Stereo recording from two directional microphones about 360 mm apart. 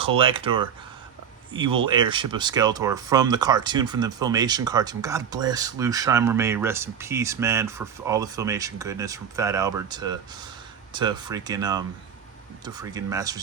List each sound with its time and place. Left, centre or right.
0.0 s speech: centre